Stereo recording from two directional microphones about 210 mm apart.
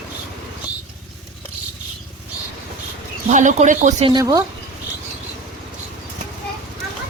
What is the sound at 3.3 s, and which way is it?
Speech, 35° right (ahead or behind).